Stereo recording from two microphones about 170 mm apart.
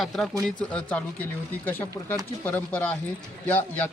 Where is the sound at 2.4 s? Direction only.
10° left (ahead or behind).